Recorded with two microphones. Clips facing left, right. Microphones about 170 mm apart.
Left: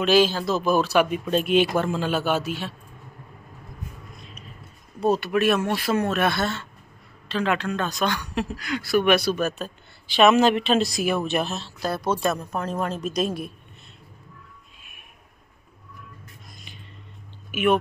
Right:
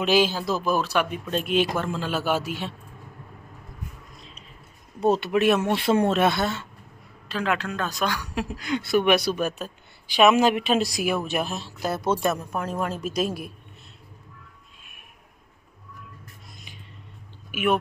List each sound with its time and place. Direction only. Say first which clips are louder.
0.0 s a man's voice: left 2 dB; 15° right (ahead or behind)
0.7 s a man's voice: left 5 dB; centre (ahead or behind)
4.2 s a sound: left 3 dB; 25° right (ahead or behind)
5.0 s a man's voice: right 1 dB; 20° right (ahead or behind); by 13.5 s 5° right (ahead or behind)
17.5 s speech: left 3 dB; 5° right (ahead or behind)